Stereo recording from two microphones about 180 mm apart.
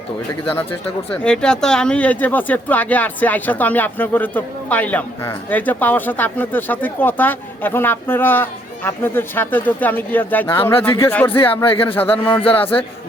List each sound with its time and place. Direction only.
0.5 s speech: 10° left (ahead or behind)
11.3 s speech: 30° left (ahead or behind)
11.9 s speech: 10° left (ahead or behind)